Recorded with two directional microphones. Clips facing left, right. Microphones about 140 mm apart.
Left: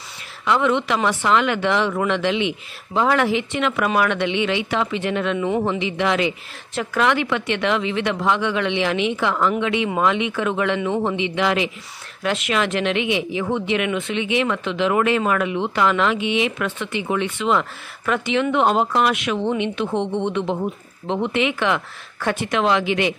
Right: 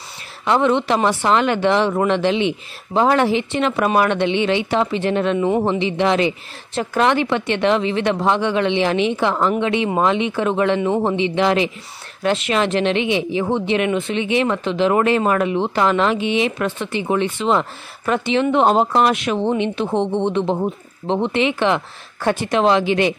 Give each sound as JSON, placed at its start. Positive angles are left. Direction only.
{"t": 0.5, "sound": "speech", "side_deg": -35}